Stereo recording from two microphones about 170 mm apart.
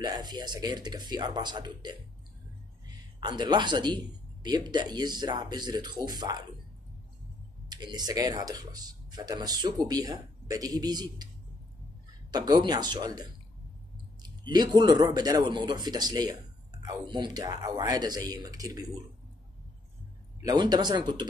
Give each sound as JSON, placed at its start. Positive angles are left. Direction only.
{"t": 0.0, "sound": "speech", "side_deg": -25}
{"t": 3.2, "sound": "speech", "side_deg": -25}
{"t": 7.7, "sound": "speech", "side_deg": -25}
{"t": 12.3, "sound": "speech", "side_deg": -25}
{"t": 20.4, "sound": "speech", "side_deg": -25}